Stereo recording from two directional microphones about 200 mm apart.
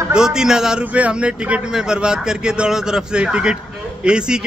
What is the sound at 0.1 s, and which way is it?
A man's voice, 5° right (ahead or behind).